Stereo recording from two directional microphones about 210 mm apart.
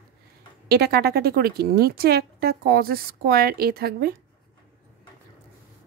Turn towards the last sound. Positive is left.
turn(degrees=-50)  # may be behind; listen again after turning